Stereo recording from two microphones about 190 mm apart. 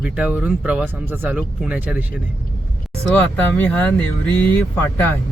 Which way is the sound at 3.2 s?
5° left (ahead or behind).